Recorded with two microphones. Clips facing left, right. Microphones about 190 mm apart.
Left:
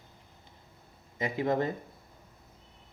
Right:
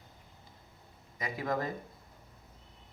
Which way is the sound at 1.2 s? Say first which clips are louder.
Left 5 dB; 25° left (ahead or behind).